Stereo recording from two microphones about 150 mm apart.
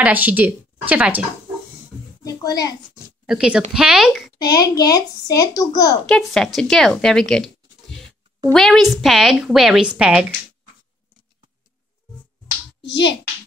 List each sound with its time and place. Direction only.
0.0 s speech: 10° right (ahead or behind)
2.4 s speech: 25° left (ahead or behind)
3.3 s a woman's voice: 5° right (ahead or behind)
4.4 s speech: 25° left (ahead or behind)
6.0 s a woman's voice: 5° left (ahead or behind)